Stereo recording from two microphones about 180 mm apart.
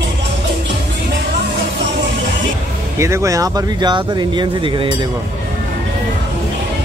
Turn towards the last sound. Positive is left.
turn(degrees=-25)  # may be behind; listen again after turning